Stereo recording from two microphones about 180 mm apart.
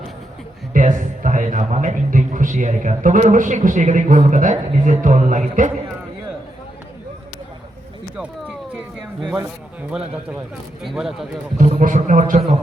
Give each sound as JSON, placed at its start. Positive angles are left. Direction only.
{"t": 0.7, "sound": "a man's voice", "side_deg": -45}
{"t": 8.1, "sound": "a sound", "side_deg": -5}
{"t": 9.9, "sound": "speech", "side_deg": -5}
{"t": 11.5, "sound": "a man's voice", "side_deg": -45}